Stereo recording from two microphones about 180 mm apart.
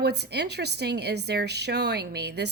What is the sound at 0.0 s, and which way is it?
A woman's voice, 65° right (ahead or behind).